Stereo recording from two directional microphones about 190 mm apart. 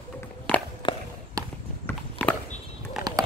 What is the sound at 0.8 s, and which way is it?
Walk, 25° left (ahead or behind).